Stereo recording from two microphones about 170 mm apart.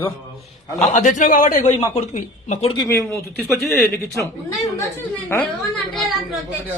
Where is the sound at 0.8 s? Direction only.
45° left (ahead or behind).